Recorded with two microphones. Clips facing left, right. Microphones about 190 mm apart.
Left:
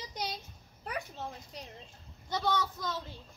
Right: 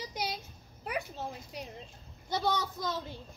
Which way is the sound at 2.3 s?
10° right (ahead or behind).